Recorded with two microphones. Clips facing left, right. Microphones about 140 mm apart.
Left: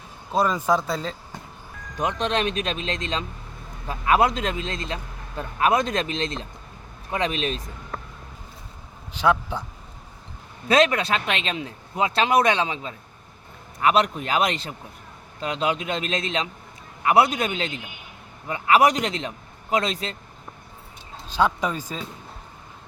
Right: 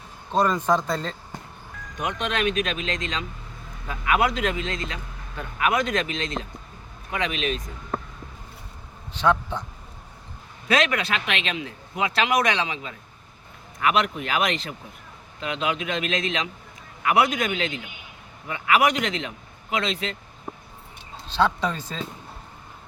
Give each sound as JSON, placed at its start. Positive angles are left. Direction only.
{"t": 0.3, "sound": "speech", "side_deg": 5}
{"t": 2.0, "sound": "speech", "side_deg": 35}
{"t": 9.1, "sound": "speech", "side_deg": 10}
{"t": 10.7, "sound": "speech", "side_deg": 35}
{"t": 21.2, "sound": "speech", "side_deg": 10}